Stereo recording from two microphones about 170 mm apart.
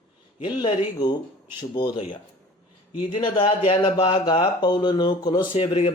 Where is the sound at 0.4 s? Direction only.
25° left (ahead or behind).